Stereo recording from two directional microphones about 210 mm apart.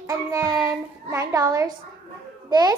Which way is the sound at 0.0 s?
15° right (ahead or behind).